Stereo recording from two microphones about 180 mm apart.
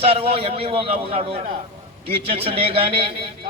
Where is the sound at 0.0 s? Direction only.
35° right (ahead or behind).